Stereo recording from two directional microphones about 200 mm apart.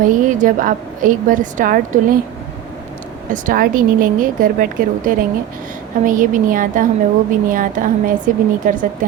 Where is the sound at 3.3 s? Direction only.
40° right (ahead or behind).